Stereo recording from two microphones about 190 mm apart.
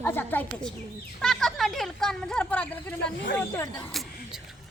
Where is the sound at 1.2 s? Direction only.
Centre (ahead or behind).